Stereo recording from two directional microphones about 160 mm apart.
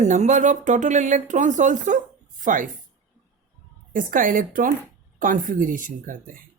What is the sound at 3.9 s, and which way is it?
Speech, 55° right (ahead or behind).